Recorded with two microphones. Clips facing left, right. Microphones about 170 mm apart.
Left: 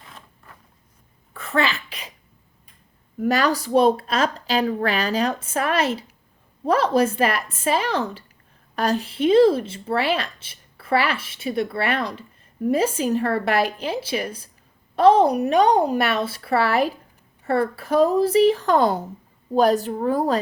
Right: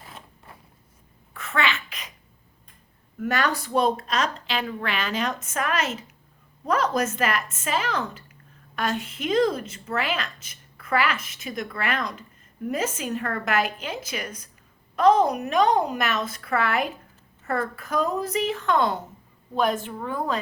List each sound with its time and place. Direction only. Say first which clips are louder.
1.3 s sneeze: left 4 dB; 35° left (ahead or behind)
3.2 s a woman's voice: left 5 dB; 35° left (ahead or behind)